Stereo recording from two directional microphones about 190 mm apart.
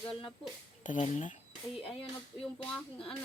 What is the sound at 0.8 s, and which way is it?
Speech, 40° left (ahead or behind).